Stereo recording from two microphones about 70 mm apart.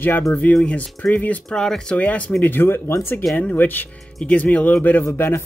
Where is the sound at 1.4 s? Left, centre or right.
Centre; by 2.9 s left.